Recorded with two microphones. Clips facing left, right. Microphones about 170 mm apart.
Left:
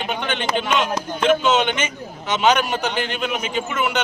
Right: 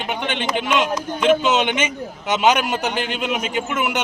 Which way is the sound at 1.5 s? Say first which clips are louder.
Even; 15° right (ahead or behind).